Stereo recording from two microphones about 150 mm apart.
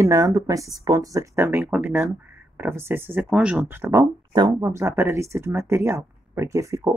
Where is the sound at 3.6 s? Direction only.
20° right (ahead or behind).